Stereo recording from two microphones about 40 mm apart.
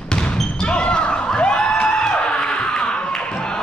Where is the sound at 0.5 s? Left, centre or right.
Left.